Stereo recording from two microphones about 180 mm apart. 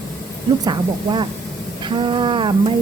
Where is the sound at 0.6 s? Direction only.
25° right (ahead or behind).